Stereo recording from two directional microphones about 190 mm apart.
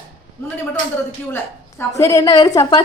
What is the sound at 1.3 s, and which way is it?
A woman's voice, 15° left (ahead or behind).